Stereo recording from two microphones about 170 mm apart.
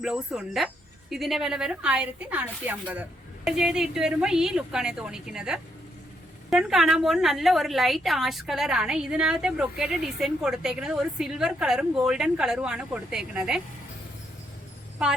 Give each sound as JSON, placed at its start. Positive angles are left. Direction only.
{"t": 0.0, "sound": "a woman's voice", "side_deg": 0}